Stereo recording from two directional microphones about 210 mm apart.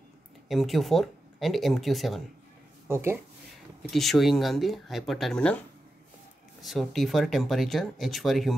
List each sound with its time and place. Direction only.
0.5 s speech: centre (ahead or behind)
2.9 s speech: 10° right (ahead or behind)
3.9 s speech: centre (ahead or behind)
6.6 s speech: centre (ahead or behind)